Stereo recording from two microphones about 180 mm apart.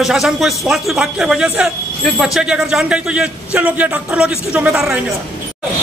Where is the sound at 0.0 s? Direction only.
Centre (ahead or behind).